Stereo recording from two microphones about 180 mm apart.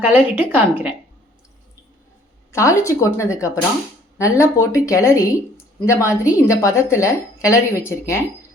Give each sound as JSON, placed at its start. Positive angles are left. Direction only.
{"t": 0.0, "sound": "speech", "side_deg": -10}
{"t": 2.5, "sound": "speech", "side_deg": 15}